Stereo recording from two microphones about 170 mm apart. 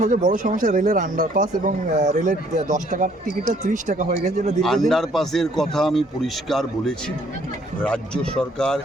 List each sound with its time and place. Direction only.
0.0 s speech: 50° right (ahead or behind)
4.6 s a man's voice: centre (ahead or behind)